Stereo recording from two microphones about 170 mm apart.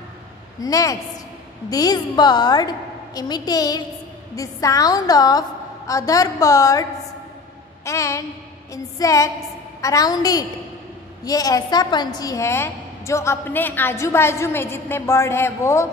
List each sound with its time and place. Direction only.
0.6 s a woman's voice: 20° left (ahead or behind)